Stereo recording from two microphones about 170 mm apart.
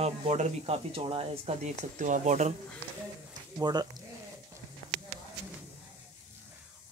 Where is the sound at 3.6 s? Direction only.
25° right (ahead or behind).